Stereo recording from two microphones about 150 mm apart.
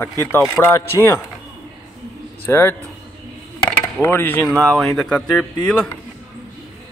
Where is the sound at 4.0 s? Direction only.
15° left (ahead or behind).